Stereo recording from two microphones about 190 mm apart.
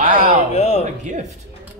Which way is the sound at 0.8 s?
40° right (ahead or behind).